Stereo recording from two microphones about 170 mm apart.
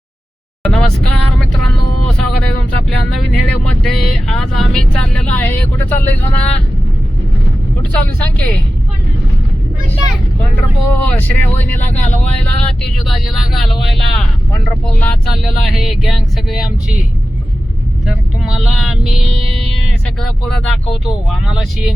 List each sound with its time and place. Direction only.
0.6 s vehicle: 5° left (ahead or behind)
2.1 s speech: 5° left (ahead or behind)
7.8 s speech: 10° left (ahead or behind)
11.0 s speech: 10° left (ahead or behind)
11.9 s speech: 40° left (ahead or behind)
12.2 s speech: 5° left (ahead or behind)
18.0 s speech: 5° right (ahead or behind)
20.2 s speech: 5° left (ahead or behind)